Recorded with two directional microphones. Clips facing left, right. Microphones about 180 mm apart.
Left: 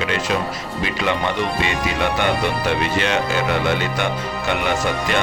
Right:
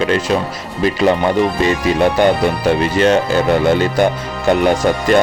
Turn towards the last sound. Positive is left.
turn(degrees=-40)  # may be behind; listen again after turning